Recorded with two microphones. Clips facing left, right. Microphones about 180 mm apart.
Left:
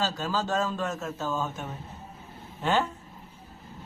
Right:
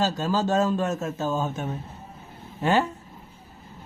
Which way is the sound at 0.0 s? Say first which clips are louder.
Right 5 dB; 15° right (ahead or behind).